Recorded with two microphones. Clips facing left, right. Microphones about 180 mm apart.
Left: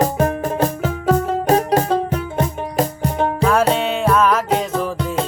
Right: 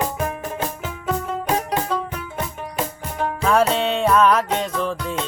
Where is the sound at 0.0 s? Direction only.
40° left (ahead or behind).